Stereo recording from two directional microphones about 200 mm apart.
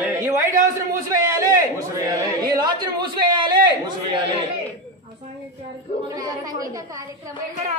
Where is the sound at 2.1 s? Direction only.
20° right (ahead or behind).